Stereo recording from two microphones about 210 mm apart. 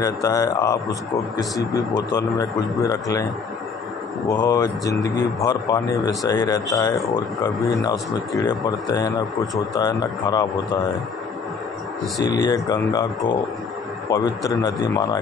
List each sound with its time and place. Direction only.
0.0 s speech: 15° left (ahead or behind)
4.3 s speech: 15° left (ahead or behind)
12.2 s speech: 20° left (ahead or behind)